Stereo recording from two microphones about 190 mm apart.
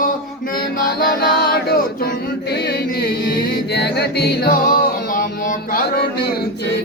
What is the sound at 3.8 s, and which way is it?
Music, 60° left (ahead or behind).